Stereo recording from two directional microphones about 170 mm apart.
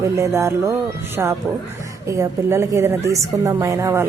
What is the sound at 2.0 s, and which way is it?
Speech, 15° right (ahead or behind).